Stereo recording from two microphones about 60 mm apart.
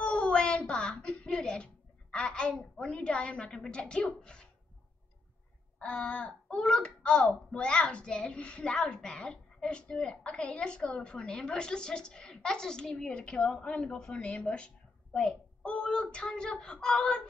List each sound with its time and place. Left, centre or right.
0.0 s a sound: centre
2.9 s speech: centre
5.8 s speech: centre